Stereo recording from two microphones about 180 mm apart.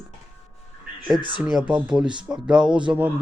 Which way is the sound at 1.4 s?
5° right (ahead or behind).